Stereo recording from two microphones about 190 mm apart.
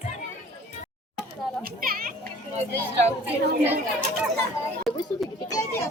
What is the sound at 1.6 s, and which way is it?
Children playing, 50° right (ahead or behind).